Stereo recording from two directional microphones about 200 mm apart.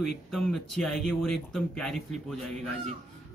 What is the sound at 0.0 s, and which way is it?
Speech, centre (ahead or behind).